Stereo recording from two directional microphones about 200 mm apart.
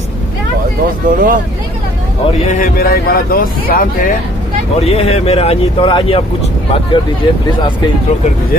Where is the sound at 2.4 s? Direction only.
45° left (ahead or behind).